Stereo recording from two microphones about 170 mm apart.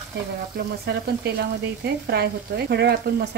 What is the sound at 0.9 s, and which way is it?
Speech, 70° right (ahead or behind).